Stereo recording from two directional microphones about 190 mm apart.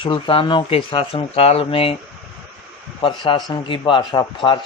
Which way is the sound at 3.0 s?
25° left (ahead or behind).